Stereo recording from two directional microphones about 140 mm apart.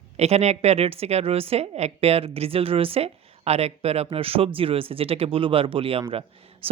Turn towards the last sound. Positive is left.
turn(degrees=-40)  # may be behind; listen again after turning